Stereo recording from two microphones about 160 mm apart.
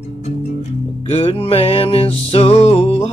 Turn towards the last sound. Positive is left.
turn(degrees=40)  # may be behind; listen again after turning